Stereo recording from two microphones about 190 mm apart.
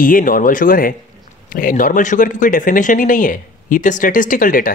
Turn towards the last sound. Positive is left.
turn(degrees=45)  # may be behind; listen again after turning